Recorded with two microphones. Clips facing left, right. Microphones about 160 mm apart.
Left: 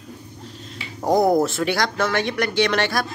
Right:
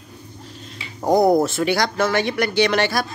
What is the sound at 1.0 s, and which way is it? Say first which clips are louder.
Speech: right 2 dB; centre (ahead or behind).